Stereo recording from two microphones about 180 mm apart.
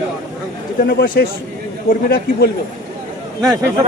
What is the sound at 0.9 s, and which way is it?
A man's voice, 55° left (ahead or behind).